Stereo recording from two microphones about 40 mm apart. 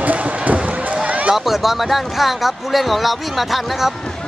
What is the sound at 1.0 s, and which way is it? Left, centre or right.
Run, right.